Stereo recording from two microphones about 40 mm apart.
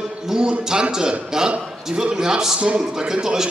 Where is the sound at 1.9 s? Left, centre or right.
Centre.